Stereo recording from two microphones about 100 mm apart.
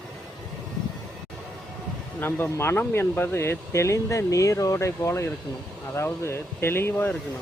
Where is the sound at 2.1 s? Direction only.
20° left (ahead or behind).